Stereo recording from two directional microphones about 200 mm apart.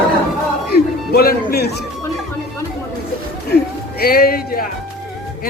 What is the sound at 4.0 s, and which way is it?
Speech, 50° left (ahead or behind).